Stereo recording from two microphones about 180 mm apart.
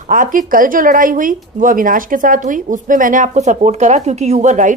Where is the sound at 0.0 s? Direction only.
45° right (ahead or behind).